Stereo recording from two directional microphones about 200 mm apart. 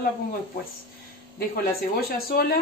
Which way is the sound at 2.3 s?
50° left (ahead or behind).